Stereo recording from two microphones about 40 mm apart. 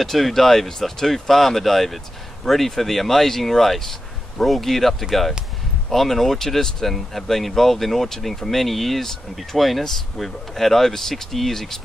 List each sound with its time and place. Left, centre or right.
0.0 s speech: centre